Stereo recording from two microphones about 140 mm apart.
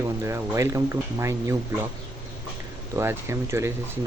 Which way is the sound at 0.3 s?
20° right (ahead or behind).